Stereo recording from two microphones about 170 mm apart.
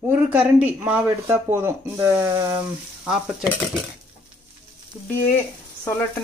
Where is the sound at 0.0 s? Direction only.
10° right (ahead or behind).